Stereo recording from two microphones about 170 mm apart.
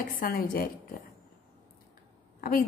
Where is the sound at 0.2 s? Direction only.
60° left (ahead or behind).